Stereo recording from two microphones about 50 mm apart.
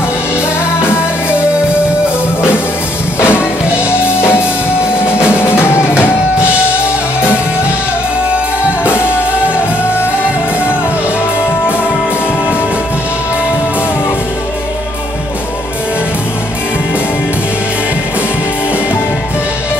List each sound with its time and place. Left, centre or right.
3.2 s music: left
8.8 s music: left